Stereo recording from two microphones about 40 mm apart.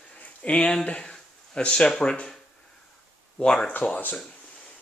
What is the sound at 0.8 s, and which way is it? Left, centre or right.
Speech, left.